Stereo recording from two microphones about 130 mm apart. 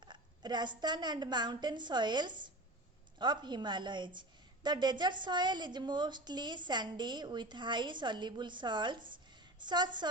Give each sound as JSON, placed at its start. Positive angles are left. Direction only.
{"t": 0.0, "sound": "a woman's voice", "side_deg": -35}